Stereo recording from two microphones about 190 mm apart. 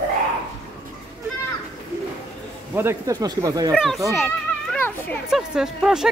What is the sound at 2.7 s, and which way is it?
Speech, 15° right (ahead or behind).